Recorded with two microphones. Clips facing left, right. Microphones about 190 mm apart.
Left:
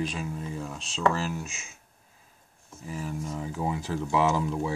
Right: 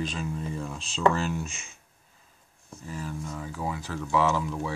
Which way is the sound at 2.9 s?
10° left (ahead or behind).